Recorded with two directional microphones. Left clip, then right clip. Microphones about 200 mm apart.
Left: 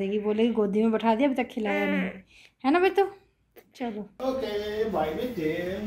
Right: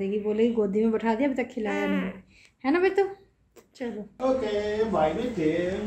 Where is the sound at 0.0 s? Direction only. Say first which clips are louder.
Right 1 dB; 30° left (ahead or behind).